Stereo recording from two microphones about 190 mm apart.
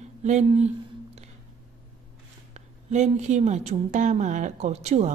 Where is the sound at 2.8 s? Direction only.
35° right (ahead or behind).